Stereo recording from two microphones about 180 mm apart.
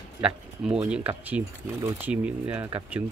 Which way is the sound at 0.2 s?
5° right (ahead or behind).